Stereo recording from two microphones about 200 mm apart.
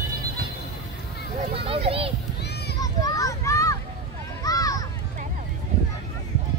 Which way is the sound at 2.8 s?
15° left (ahead or behind).